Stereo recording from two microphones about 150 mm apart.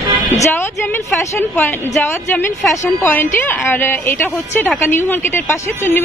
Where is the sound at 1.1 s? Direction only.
15° left (ahead or behind).